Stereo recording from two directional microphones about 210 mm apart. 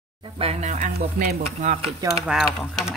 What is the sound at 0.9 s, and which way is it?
Speech, 45° right (ahead or behind).